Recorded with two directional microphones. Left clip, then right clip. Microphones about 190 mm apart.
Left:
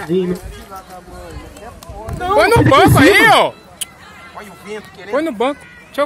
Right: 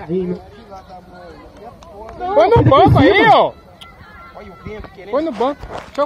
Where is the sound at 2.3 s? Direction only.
5° left (ahead or behind).